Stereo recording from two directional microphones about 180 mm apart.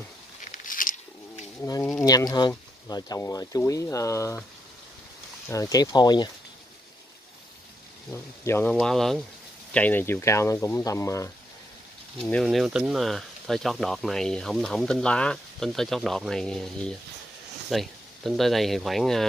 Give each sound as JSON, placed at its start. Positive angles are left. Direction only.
{"t": 0.4, "sound": "a sound", "side_deg": 45}
{"t": 1.6, "sound": "speech", "side_deg": 15}
{"t": 5.5, "sound": "speech", "side_deg": 20}
{"t": 8.1, "sound": "speech", "side_deg": 15}
{"t": 8.7, "sound": "speech", "side_deg": 0}
{"t": 12.2, "sound": "speech", "side_deg": 5}